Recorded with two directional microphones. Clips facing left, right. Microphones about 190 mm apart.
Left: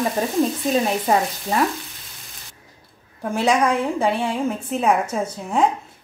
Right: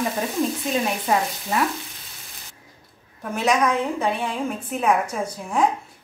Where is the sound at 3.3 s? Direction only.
30° left (ahead or behind).